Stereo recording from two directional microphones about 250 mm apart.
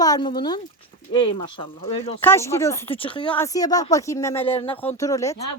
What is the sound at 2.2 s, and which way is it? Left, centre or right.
Speech, centre.